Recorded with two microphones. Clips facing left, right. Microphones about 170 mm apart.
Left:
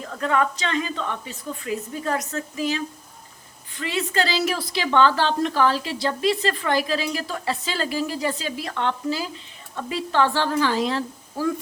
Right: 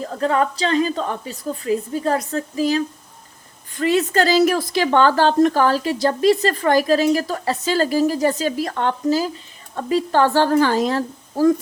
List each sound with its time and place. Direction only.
0.0 s a woman's voice: 35° right (ahead or behind)